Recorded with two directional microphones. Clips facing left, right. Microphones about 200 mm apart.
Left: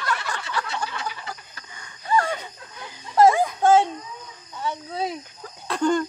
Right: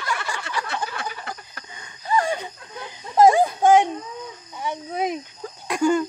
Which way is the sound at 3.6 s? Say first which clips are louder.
Right 1 dB; 15° right (ahead or behind).